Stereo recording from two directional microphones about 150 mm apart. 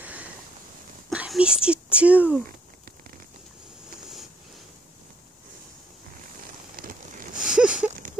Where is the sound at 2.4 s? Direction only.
70° right (ahead or behind).